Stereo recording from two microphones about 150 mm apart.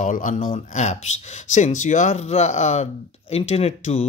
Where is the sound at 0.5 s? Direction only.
50° left (ahead or behind).